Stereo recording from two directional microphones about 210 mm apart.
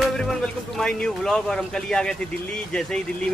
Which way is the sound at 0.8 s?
5° left (ahead or behind).